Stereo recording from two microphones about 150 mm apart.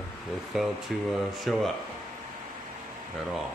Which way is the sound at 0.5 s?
5° right (ahead or behind).